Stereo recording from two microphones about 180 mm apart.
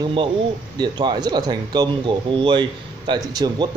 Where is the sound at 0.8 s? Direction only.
25° right (ahead or behind).